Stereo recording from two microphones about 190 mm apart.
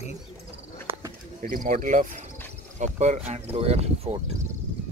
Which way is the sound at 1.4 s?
45° right (ahead or behind).